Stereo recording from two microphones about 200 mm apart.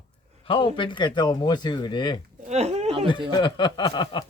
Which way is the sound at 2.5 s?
35° right (ahead or behind).